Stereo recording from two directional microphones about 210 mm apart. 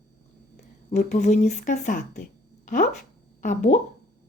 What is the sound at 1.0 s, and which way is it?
A woman's voice, 35° left (ahead or behind).